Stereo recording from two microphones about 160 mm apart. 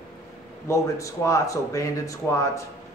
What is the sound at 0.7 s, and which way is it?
A man's voice, 20° left (ahead or behind).